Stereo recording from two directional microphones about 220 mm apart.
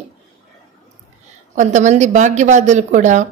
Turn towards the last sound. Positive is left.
turn(degrees=-35)  # may be behind; listen again after turning